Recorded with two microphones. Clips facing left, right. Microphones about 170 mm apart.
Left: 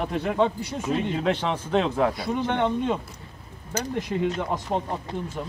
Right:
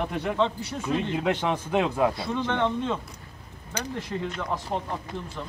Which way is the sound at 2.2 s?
15° left (ahead or behind).